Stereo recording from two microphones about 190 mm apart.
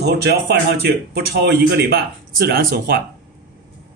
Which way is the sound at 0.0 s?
60° right (ahead or behind).